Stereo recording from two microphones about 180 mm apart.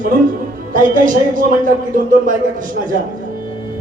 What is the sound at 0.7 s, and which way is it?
Speech, 45° right (ahead or behind).